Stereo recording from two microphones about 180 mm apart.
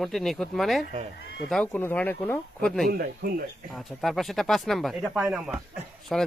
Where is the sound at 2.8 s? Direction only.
60° right (ahead or behind).